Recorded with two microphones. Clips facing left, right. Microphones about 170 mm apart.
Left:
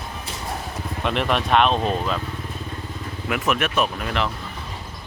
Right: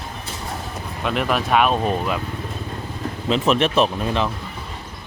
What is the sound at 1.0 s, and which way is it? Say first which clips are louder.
Speech: right 1 dB; centre (ahead or behind).